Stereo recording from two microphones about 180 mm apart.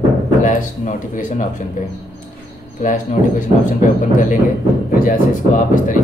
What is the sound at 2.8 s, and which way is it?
A man's voice, 45° left (ahead or behind).